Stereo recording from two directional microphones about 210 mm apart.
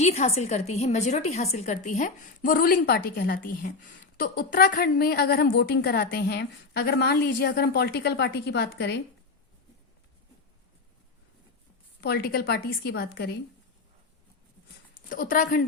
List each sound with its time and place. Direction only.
0.0 s a woman's voice: 30° left (ahead or behind); by 9.0 s 55° left (ahead or behind)
11.9 s a woman's voice: 50° left (ahead or behind)
15.1 s a woman's voice: 40° left (ahead or behind)